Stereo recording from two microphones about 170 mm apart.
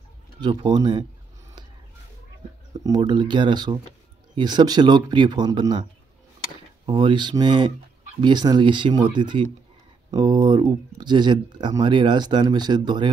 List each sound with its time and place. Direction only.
0.4 s speech: 25° right (ahead or behind)
2.8 s speech: 25° right (ahead or behind)
6.9 s speech: 30° right (ahead or behind)